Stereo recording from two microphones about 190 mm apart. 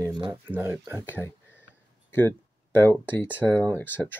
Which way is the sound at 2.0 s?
10° left (ahead or behind).